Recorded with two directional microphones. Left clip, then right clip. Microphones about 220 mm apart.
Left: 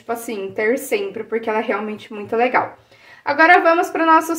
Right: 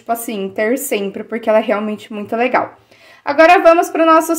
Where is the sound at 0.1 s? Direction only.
40° right (ahead or behind).